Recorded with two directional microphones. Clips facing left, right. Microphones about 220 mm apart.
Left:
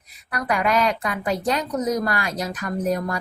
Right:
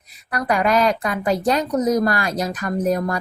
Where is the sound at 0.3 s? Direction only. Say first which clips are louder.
Right 3 dB; 35° right (ahead or behind).